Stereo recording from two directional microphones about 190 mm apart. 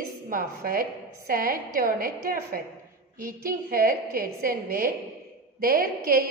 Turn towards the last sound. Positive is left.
turn(degrees=-50)  # may be behind; listen again after turning